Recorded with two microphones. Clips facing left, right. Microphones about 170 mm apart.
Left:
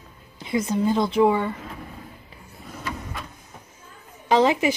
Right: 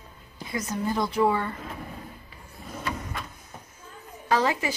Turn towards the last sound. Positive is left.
turn(degrees=20)  # may be behind; listen again after turning